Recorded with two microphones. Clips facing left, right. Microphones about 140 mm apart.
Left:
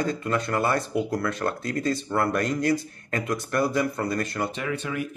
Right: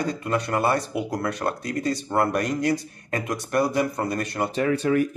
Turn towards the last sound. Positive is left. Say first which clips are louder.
# right 8 dB
turn(degrees=-40)  # may be behind; listen again after turning